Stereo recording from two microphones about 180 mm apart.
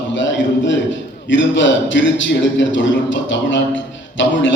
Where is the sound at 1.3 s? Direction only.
90° left.